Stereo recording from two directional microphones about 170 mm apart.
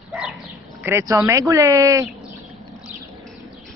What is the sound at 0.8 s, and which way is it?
Speech, 15° right (ahead or behind).